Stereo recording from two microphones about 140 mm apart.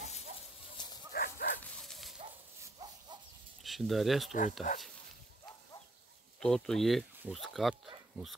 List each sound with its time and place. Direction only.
0.8 s dog: 30° left (ahead or behind)
1.1 s bow-wow: 90° left
1.6 s dog: centre (ahead or behind)
3.6 s speech: centre (ahead or behind)
4.3 s speech: 60° left (ahead or behind)
6.4 s speech: 5° left (ahead or behind)